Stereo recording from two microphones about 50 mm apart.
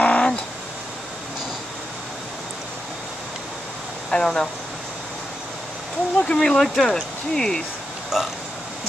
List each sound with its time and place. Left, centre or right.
0.0 s a sound: left
4.1 s speech: centre
6.2 s speech: centre
8.1 s speech: centre